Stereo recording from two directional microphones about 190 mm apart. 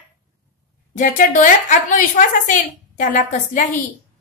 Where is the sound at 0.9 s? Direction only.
45° left (ahead or behind).